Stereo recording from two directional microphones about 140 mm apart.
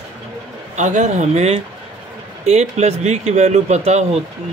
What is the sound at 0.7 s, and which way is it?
Speech, 60° right (ahead or behind).